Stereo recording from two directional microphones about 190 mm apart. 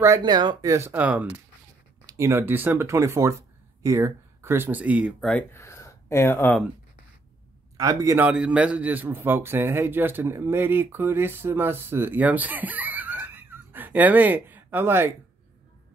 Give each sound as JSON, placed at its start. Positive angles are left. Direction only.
{"t": 0.0, "sound": "a man's voice", "side_deg": -20}
{"t": 5.3, "sound": "speech", "side_deg": 15}
{"t": 7.7, "sound": "a man's voice", "side_deg": -15}
{"t": 8.3, "sound": "a man's voice", "side_deg": -5}